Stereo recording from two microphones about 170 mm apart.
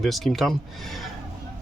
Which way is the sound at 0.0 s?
Centre (ahead or behind).